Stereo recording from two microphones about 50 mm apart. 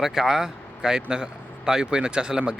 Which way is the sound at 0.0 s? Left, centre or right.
Centre.